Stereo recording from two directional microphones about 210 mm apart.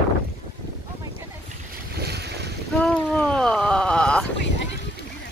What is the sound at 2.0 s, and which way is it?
Boat, 50° right (ahead or behind).